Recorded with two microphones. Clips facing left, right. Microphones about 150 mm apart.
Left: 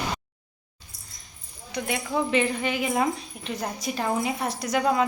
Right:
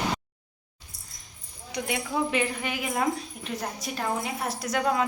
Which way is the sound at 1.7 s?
10° right (ahead or behind).